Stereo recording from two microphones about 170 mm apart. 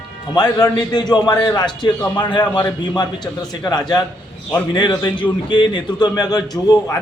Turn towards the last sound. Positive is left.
turn(degrees=20)  # may be behind; listen again after turning